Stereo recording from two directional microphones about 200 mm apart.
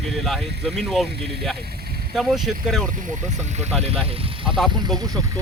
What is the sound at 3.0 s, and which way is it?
Speech, 35° right (ahead or behind).